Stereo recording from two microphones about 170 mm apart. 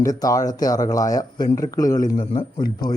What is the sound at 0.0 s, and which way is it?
Speech, 20° left (ahead or behind).